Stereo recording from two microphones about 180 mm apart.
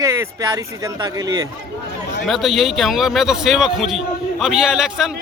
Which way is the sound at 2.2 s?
Centre (ahead or behind).